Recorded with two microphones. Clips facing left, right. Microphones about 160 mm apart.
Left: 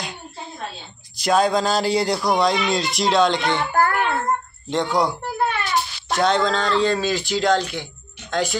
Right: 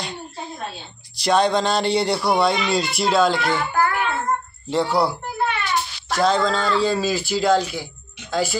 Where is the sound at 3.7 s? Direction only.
50° left (ahead or behind).